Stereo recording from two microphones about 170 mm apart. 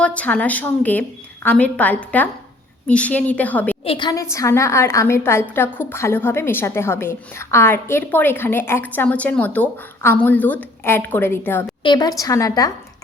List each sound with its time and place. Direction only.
0.0 s a woman's voice: 10° left (ahead or behind)
3.8 s a woman's voice: 30° left (ahead or behind)
4.1 s a woman's voice: 20° left (ahead or behind)
11.8 s a woman's voice: 25° left (ahead or behind)